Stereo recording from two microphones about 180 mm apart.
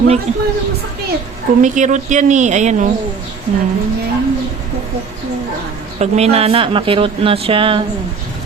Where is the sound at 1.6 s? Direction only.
45° right (ahead or behind).